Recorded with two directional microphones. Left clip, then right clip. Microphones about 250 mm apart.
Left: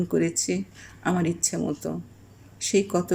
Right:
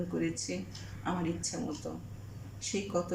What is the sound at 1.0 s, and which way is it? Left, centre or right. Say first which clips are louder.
Speech: left 9 dB; left.